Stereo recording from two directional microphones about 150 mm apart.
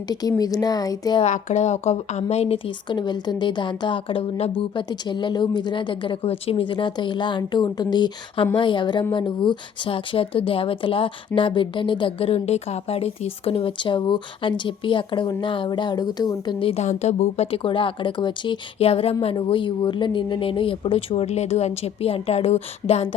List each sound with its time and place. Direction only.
0.1 s speech: 25° left (ahead or behind)
1.2 s a woman's voice: 50° left (ahead or behind)
16.8 s a woman's voice: 50° left (ahead or behind)